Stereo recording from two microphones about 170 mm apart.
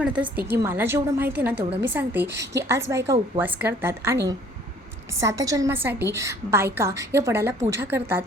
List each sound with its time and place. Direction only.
0.2 s a woman's voice: 10° right (ahead or behind)